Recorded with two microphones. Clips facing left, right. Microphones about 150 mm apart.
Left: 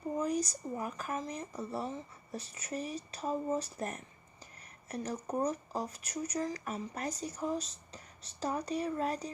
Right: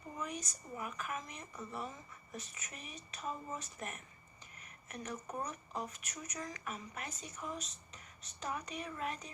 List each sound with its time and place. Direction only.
0.2 s speech: 35° left (ahead or behind)